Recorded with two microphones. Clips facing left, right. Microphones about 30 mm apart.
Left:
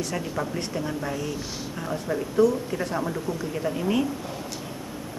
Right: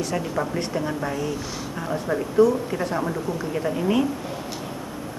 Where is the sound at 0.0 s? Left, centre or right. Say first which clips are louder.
Right 3 dB; centre.